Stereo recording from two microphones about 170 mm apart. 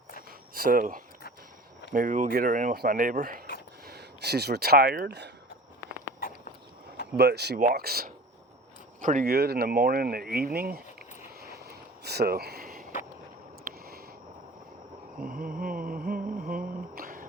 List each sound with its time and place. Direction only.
0.5 s speech: 55° right (ahead or behind)
3.8 s speech: 70° right (ahead or behind)
6.1 s walk: 55° left (ahead or behind)
7.2 s speech: 75° right (ahead or behind)
9.0 s speech: 50° right (ahead or behind)
9.3 s speech: 70° right (ahead or behind)
11.3 s a sound: 70° right (ahead or behind)
15.3 s a sound: 55° right (ahead or behind)